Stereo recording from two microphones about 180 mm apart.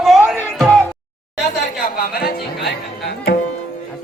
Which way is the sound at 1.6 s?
55° left (ahead or behind).